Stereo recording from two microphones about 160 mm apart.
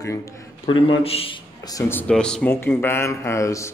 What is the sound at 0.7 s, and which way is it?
A man's voice, 35° left (ahead or behind).